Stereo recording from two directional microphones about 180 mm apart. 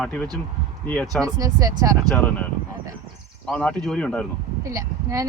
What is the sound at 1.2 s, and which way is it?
Speech, 20° right (ahead or behind).